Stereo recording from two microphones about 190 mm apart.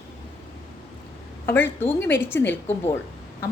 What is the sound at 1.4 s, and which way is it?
A woman's voice, 10° left (ahead or behind).